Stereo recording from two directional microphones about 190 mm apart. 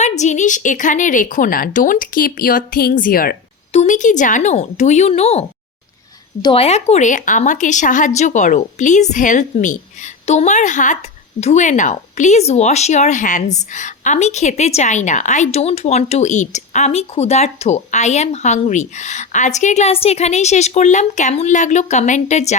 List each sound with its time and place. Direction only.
0.0 s a woman's voice: 40° left (ahead or behind)
3.7 s a woman's voice: 40° left (ahead or behind)